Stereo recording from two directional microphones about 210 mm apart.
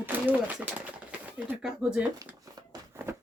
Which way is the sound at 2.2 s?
15° right (ahead or behind).